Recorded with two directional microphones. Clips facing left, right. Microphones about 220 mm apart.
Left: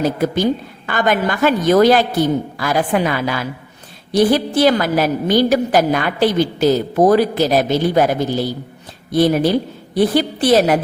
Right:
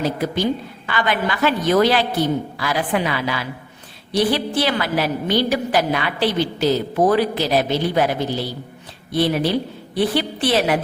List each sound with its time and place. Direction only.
0.0 s a woman's voice: 45° left (ahead or behind)